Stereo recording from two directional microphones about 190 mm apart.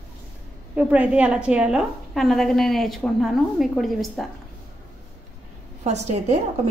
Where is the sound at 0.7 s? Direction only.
5° right (ahead or behind).